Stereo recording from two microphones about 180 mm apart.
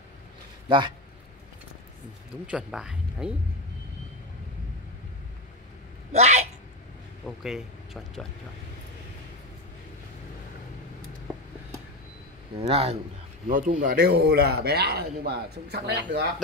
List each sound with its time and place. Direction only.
0.7 s a man's voice: 25° right (ahead or behind)
2.4 s speech: 5° right (ahead or behind)
6.1 s a sound: 40° right (ahead or behind)
7.2 s speech: centre (ahead or behind)
12.5 s a man's voice: 35° right (ahead or behind)
13.5 s speech: 50° right (ahead or behind)